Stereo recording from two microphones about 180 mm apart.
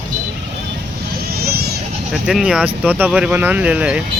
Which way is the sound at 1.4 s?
60° right (ahead or behind).